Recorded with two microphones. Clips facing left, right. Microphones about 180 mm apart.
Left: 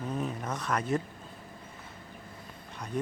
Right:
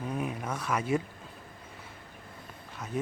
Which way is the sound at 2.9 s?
5° right (ahead or behind).